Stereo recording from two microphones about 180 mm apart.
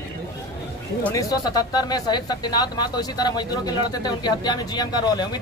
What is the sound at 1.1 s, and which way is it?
Speech, 20° left (ahead or behind).